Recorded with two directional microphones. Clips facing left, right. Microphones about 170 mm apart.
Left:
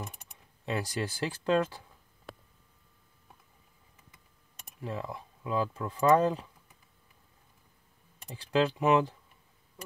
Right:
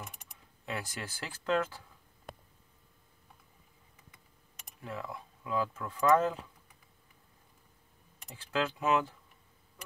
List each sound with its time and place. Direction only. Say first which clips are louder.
0.7 s speech: left 7 dB; 20° left (ahead or behind)
4.8 s speech: left 4 dB; 30° left (ahead or behind)
8.3 s speech: left 6 dB; 35° left (ahead or behind)